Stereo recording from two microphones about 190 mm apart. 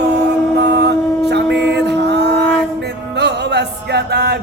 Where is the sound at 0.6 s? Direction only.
60° right (ahead or behind).